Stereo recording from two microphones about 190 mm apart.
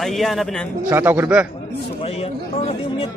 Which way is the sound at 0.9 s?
10° right (ahead or behind).